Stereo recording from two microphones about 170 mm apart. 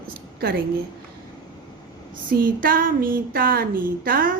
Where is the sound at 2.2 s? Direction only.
55° right (ahead or behind).